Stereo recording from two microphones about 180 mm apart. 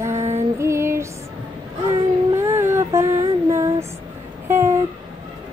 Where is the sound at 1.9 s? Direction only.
15° right (ahead or behind).